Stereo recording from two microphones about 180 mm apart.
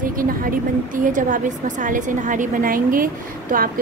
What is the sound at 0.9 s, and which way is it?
A woman's voice, 45° right (ahead or behind).